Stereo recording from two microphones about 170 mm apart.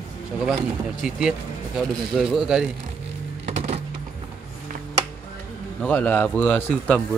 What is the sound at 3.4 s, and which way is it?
Music, 40° right (ahead or behind).